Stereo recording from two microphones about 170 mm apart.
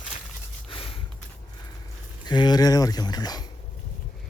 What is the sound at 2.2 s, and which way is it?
Speech, 25° left (ahead or behind).